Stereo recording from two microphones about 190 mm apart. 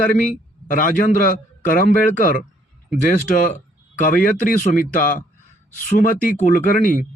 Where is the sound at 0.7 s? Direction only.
45° left (ahead or behind).